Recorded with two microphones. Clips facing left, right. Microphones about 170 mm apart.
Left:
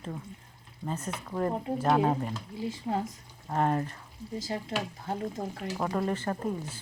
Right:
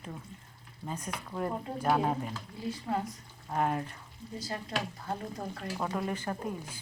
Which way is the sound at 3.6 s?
5° right (ahead or behind).